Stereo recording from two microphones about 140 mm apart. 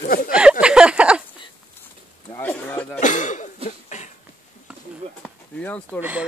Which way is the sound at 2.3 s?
10° left (ahead or behind).